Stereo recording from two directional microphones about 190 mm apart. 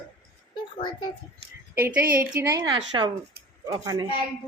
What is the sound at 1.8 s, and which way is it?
Speech, 10° right (ahead or behind).